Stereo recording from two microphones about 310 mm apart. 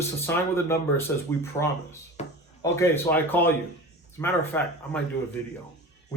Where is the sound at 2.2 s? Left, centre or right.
Left.